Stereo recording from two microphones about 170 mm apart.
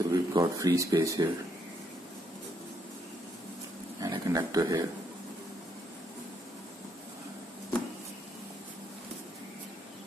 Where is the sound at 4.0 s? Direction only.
25° right (ahead or behind).